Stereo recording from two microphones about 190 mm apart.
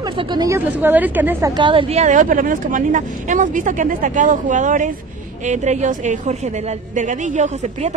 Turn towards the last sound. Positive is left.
turn(degrees=-35)  # may be behind; listen again after turning